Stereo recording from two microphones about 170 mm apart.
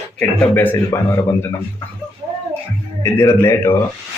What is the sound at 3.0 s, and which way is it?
Speech, 15° left (ahead or behind).